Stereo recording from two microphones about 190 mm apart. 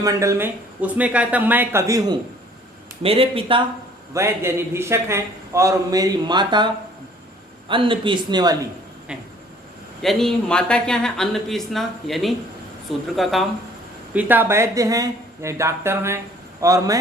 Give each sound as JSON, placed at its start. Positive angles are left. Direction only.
{"t": 0.0, "sound": "speech", "side_deg": -15}
{"t": 3.0, "sound": "a man's voice", "side_deg": -30}
{"t": 4.1, "sound": "speech", "side_deg": -15}
{"t": 7.7, "sound": "a man's voice", "side_deg": -25}
{"t": 10.0, "sound": "speech", "side_deg": 0}